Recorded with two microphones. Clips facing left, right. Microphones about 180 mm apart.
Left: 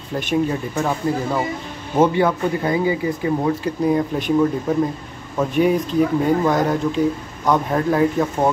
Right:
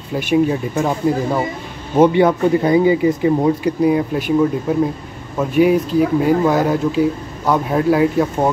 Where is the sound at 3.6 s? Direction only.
10° right (ahead or behind).